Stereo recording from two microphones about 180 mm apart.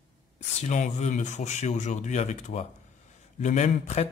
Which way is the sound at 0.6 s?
40° left (ahead or behind).